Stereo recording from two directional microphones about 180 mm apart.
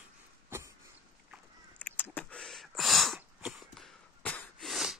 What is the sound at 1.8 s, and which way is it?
Vehicle, 10° left (ahead or behind).